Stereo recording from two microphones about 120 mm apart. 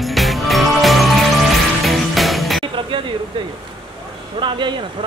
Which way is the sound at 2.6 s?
45° right (ahead or behind).